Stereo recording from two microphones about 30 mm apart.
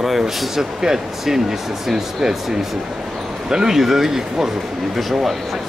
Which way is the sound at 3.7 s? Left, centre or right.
Centre.